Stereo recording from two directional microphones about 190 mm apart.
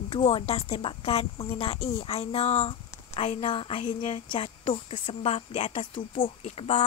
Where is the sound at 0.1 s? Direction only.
30° left (ahead or behind).